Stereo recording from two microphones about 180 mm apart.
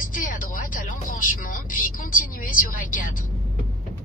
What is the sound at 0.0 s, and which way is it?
Vehicle, 50° left (ahead or behind).